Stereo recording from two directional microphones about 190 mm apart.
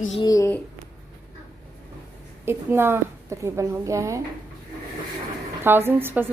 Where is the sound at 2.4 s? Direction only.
10° right (ahead or behind).